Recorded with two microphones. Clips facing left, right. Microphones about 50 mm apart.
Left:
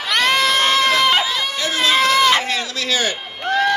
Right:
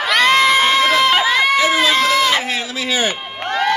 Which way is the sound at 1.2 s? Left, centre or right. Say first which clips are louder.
Right 7 dB; right.